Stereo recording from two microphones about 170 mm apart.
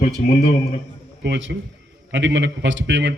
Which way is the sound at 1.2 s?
90° right.